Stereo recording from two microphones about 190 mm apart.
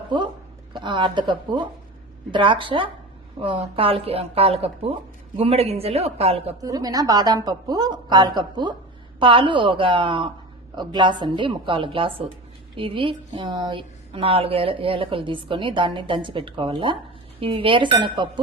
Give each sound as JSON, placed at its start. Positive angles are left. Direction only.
{"t": 0.7, "sound": "a woman's voice", "side_deg": -25}
{"t": 6.6, "sound": "a woman's voice", "side_deg": -20}